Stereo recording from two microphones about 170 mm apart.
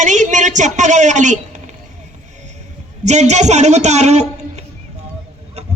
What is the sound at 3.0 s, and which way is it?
A man's voice, 40° right (ahead or behind).